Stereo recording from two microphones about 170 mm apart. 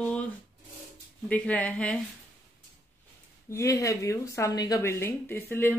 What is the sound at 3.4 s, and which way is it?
Speech, 20° left (ahead or behind).